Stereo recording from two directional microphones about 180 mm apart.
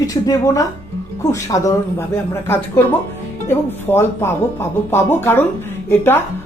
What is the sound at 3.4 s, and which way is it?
Speech, 15° left (ahead or behind).